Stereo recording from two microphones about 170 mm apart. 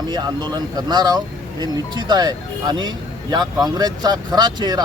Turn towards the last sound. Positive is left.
turn(degrees=-25)  # may be behind; listen again after turning